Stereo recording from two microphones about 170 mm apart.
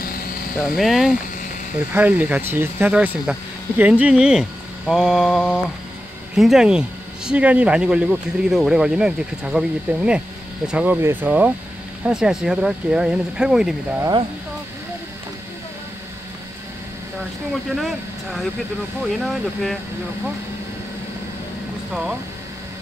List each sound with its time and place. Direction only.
0.0 s vehicle: 60° left (ahead or behind)
0.6 s speech: centre (ahead or behind)
17.7 s speech: centre (ahead or behind)